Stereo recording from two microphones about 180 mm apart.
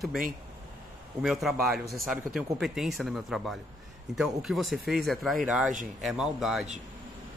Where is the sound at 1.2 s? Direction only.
Centre (ahead or behind).